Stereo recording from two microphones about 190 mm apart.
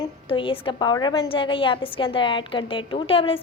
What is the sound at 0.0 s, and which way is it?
A woman's voice, 25° left (ahead or behind).